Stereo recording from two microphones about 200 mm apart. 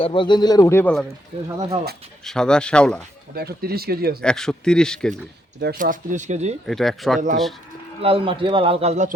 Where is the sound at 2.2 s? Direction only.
5° left (ahead or behind).